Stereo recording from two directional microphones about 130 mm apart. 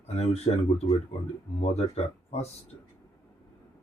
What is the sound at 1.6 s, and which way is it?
Speech, 55° left (ahead or behind).